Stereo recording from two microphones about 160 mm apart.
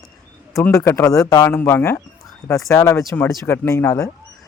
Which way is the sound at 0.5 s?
20° left (ahead or behind).